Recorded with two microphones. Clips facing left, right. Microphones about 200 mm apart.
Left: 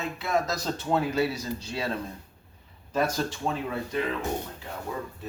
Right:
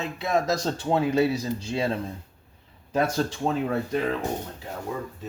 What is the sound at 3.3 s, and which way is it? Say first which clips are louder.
Speech: right 5 dB; 35° right (ahead or behind).